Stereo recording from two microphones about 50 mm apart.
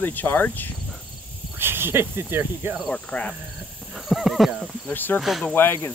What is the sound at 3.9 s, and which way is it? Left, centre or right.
Horse, centre.